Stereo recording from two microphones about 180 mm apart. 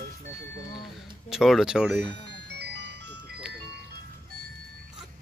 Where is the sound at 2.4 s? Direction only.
70° right (ahead or behind).